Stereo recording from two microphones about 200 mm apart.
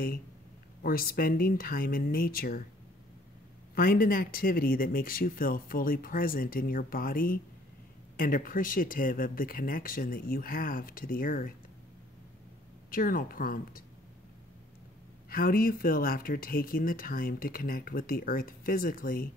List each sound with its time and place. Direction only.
0.8 s speech: 45° left (ahead or behind)
3.7 s speech: 45° left (ahead or behind)
12.9 s speech: 45° left (ahead or behind)
15.2 s speech: 45° left (ahead or behind)